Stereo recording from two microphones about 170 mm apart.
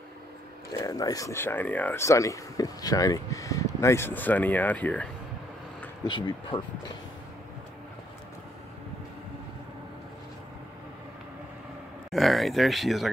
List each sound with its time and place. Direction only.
0.8 s speech: 20° left (ahead or behind)
6.0 s speech: 25° left (ahead or behind)
12.1 s speech: centre (ahead or behind)